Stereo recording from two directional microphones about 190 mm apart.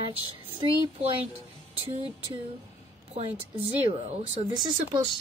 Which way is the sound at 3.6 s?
35° right (ahead or behind).